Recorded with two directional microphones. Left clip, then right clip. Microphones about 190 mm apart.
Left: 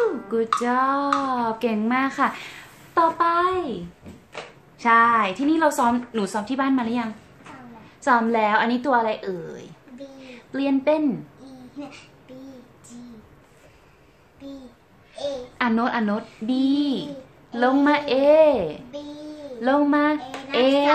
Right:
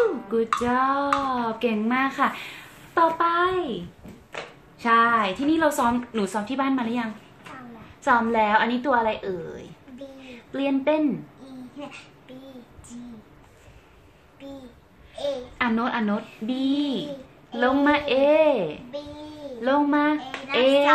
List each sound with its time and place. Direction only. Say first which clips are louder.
0.3 s speech: left 1 dB; 10° left (ahead or behind)
4.8 s speech: left 2 dB; 10° left (ahead or behind)
10.2 s a sound: left 1 dB; 15° left (ahead or behind)
15.5 s speech: left 4 dB; 20° left (ahead or behind)